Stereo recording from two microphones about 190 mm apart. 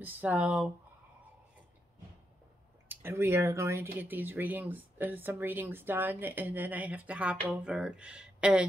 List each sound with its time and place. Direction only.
0.0 s speech: 10° right (ahead or behind)
2.9 s speech: 10° right (ahead or behind)